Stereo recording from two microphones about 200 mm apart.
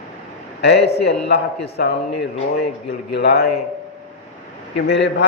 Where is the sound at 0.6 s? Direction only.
55° left (ahead or behind).